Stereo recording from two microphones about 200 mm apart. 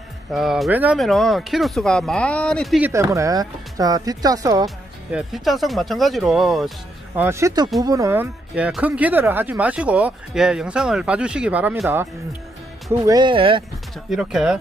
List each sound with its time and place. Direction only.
0.3 s speech: centre (ahead or behind)
2.9 s speech: 15° right (ahead or behind)
4.6 s speech: centre (ahead or behind)
7.2 s speech: 15° right (ahead or behind)
13.0 s speech: 20° right (ahead or behind)
14.1 s speech: 5° right (ahead or behind)